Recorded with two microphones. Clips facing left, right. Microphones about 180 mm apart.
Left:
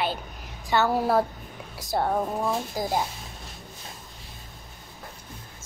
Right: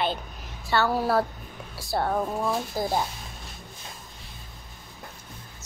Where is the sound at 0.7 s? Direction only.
20° left (ahead or behind).